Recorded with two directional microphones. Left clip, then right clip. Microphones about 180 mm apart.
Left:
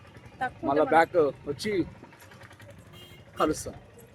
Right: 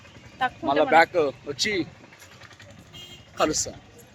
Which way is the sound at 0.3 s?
5° right (ahead or behind).